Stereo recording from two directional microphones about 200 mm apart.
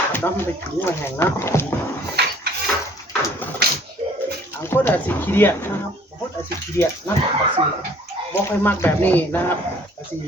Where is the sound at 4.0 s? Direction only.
30° right (ahead or behind).